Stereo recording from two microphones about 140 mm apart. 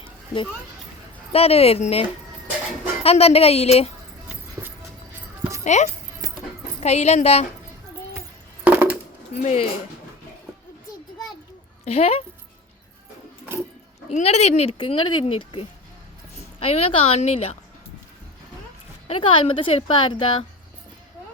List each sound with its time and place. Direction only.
1.3 s speech: 45° left (ahead or behind)
4.6 s music: 20° right (ahead or behind)
5.6 s speech: 55° left (ahead or behind)
6.2 s music: 25° right (ahead or behind)
6.7 s speech: 50° left (ahead or behind)
8.6 s coin: 10° right (ahead or behind)
9.3 s speech: 50° left (ahead or behind)
11.9 s speech: 45° left (ahead or behind)
14.1 s speech: 50° left (ahead or behind)
19.0 s speech: 40° left (ahead or behind)